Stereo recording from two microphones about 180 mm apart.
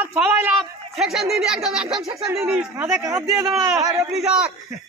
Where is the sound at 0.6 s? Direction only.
Centre (ahead or behind).